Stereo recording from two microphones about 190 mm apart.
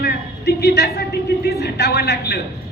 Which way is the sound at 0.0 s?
60° left (ahead or behind).